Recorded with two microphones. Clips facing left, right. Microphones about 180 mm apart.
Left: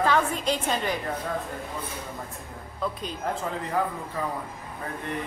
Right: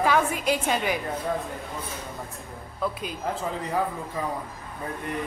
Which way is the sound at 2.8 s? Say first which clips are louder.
Right 1 dB; 5° right (ahead or behind).